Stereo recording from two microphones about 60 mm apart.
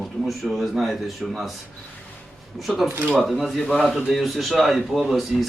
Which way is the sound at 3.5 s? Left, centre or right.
Centre.